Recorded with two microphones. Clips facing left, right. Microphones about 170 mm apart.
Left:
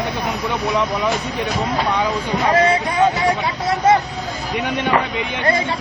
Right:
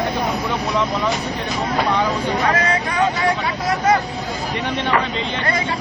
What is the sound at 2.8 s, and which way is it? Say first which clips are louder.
Speech: left 2 dB; 25° left (ahead or behind).